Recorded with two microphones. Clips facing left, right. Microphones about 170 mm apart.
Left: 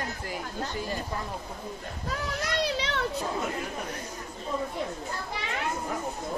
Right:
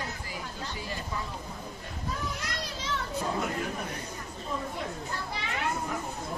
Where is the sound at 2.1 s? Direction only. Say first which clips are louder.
Left 5 dB; 70° left (ahead or behind).